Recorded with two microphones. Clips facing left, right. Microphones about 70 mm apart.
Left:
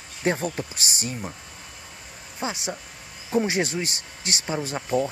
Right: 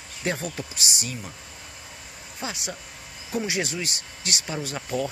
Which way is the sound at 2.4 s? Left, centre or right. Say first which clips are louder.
Left 4 dB; left.